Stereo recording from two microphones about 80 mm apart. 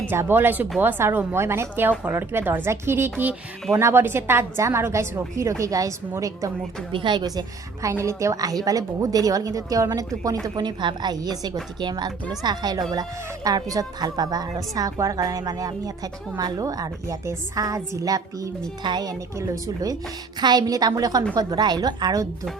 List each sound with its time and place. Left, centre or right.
0.1 s a woman's voice: right
6.9 s a woman's voice: right
7.3 s a woman's voice: right
10.5 s a woman's voice: right
18.8 s a woman's voice: right
19.4 s a woman's voice: right
20.4 s a woman's voice: right